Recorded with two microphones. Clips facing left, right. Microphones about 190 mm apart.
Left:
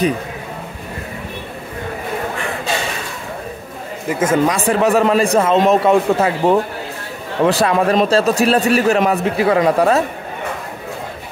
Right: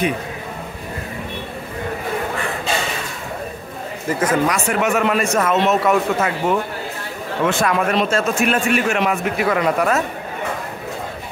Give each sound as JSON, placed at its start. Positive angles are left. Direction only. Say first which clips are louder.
{"t": 4.1, "sound": "a man's voice", "louder": "left 3 dB", "side_deg": 25}